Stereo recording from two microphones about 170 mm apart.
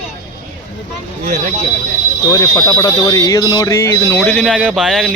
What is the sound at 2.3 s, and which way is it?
Speech, 20° left (ahead or behind).